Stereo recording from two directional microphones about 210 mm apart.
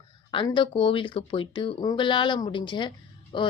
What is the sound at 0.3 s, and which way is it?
A woman's voice, 20° left (ahead or behind).